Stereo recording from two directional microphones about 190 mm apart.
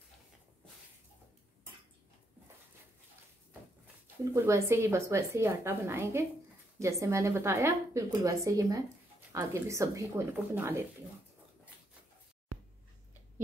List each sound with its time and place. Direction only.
4.2 s a woman's voice: 15° right (ahead or behind)